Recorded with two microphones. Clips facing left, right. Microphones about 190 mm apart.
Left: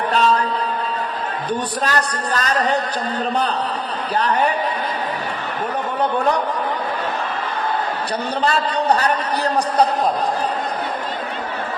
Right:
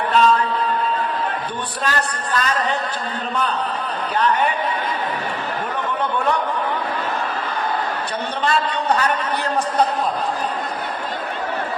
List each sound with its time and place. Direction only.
0.1 s a sound: 40° left (ahead or behind)
1.8 s speech: 40° left (ahead or behind)
4.2 s speech: 35° left (ahead or behind)
6.0 s speech: 35° left (ahead or behind)
8.4 s speech: 35° left (ahead or behind)